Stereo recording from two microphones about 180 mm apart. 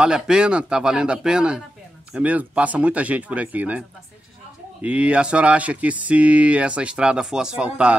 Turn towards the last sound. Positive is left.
turn(degrees=-5)  # may be behind; listen again after turning